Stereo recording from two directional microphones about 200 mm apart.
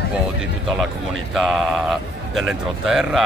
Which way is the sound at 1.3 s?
Centre (ahead or behind).